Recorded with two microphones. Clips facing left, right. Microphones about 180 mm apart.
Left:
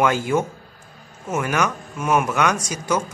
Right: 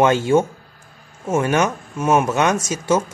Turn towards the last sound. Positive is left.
turn(degrees=-25)  # may be behind; listen again after turning